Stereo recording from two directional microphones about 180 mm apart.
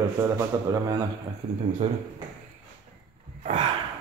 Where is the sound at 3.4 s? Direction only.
40° right (ahead or behind).